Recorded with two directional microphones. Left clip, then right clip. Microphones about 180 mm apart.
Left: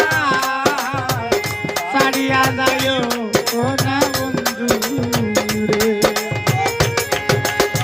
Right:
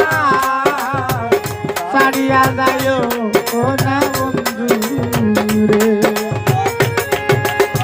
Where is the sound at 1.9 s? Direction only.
55° right (ahead or behind).